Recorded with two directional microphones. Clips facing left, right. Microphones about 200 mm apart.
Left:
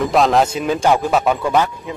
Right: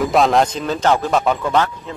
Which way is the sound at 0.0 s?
Centre (ahead or behind).